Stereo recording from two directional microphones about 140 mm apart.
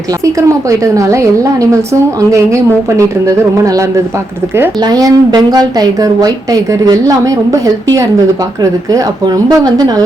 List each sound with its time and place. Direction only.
0.3 s a woman's voice: 25° right (ahead or behind)